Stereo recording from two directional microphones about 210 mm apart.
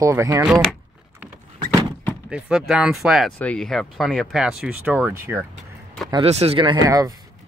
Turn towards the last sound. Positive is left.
turn(degrees=-15)  # may be behind; listen again after turning